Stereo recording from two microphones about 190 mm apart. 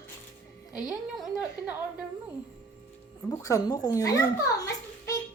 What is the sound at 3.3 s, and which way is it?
Speech, 15° left (ahead or behind).